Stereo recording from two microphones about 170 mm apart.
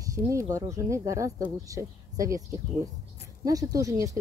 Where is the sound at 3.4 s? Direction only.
20° right (ahead or behind).